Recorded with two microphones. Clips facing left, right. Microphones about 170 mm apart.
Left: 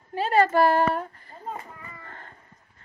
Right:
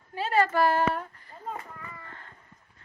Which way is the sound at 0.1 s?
40° left (ahead or behind).